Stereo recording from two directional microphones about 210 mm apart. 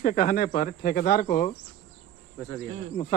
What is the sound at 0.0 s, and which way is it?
Speech, 40° left (ahead or behind).